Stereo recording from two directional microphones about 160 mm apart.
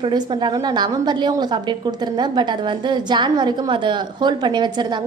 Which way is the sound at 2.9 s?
30° right (ahead or behind).